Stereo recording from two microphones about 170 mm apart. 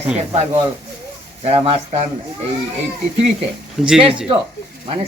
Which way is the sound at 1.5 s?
40° right (ahead or behind).